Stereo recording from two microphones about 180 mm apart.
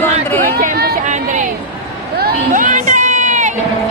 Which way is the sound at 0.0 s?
10° left (ahead or behind).